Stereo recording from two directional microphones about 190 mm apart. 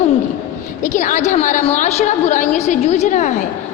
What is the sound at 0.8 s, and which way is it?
A woman's voice, 40° left (ahead or behind).